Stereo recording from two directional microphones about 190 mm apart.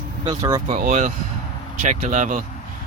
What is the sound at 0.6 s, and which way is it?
Speech, 40° right (ahead or behind).